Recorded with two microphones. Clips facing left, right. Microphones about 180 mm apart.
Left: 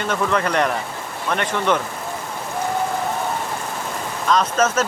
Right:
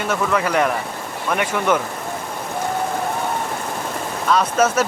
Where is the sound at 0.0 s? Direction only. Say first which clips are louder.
Right 1 dB; 5° right (ahead or behind).